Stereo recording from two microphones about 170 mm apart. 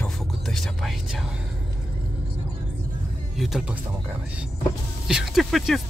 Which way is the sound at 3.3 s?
Centre (ahead or behind).